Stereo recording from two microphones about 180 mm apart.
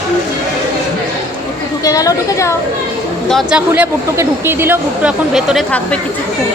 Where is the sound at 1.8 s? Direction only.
20° left (ahead or behind).